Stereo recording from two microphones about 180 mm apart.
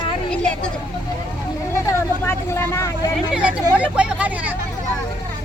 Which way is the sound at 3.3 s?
5° right (ahead or behind).